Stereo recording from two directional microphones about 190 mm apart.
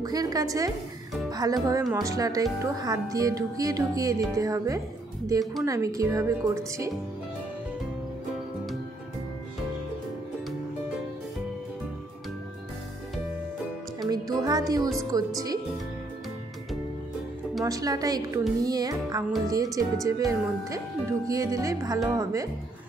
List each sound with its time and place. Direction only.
0.0 s speech: 20° right (ahead or behind)
14.0 s music: 20° right (ahead or behind)
15.0 s speech: 20° right (ahead or behind)
17.6 s speech: 20° right (ahead or behind)